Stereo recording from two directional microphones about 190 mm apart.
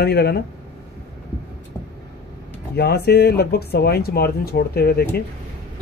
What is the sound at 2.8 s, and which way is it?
Speech, 55° left (ahead or behind).